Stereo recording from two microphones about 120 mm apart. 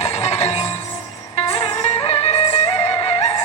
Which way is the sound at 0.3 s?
65° left (ahead or behind).